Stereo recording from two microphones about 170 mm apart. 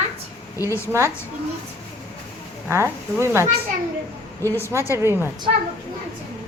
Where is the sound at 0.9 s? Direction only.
15° right (ahead or behind).